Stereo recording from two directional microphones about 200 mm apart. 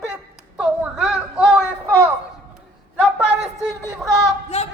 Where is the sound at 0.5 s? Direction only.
5° right (ahead or behind).